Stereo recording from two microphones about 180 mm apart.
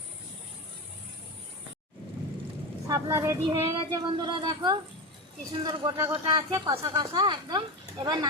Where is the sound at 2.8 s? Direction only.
15° right (ahead or behind).